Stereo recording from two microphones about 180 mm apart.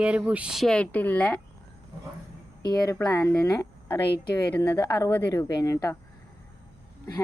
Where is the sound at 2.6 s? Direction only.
20° left (ahead or behind).